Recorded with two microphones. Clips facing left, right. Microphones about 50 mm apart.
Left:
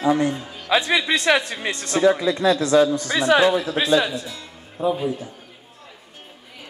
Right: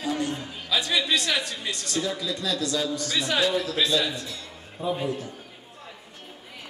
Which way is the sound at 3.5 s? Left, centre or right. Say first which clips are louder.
Left 5 dB; left.